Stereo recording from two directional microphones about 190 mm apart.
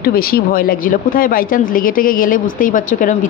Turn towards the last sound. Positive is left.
turn(degrees=45)  # may be behind; listen again after turning